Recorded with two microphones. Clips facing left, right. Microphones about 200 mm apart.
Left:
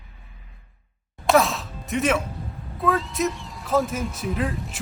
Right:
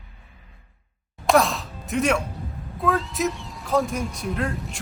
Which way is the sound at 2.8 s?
Centre (ahead or behind).